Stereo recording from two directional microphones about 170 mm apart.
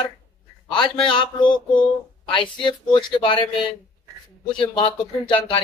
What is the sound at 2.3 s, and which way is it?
Speech, 25° left (ahead or behind).